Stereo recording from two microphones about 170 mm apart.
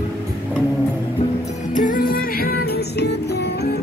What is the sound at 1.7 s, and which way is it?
Music, 50° left (ahead or behind).